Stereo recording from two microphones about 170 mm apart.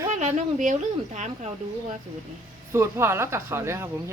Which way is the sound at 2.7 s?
15° right (ahead or behind).